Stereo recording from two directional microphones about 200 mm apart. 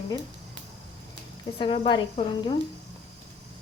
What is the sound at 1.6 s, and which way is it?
Speech, 25° left (ahead or behind).